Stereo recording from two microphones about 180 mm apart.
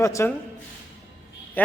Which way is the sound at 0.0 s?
15° left (ahead or behind).